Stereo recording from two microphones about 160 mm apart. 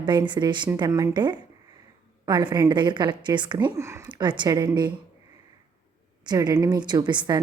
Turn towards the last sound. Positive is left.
turn(degrees=-25)  # may be behind; listen again after turning